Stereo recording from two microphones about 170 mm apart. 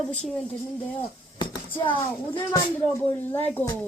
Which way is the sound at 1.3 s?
25° left (ahead or behind).